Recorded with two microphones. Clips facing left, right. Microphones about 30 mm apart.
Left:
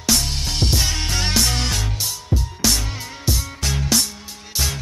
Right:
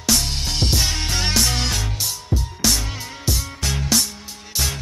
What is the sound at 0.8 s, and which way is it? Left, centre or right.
Music, centre.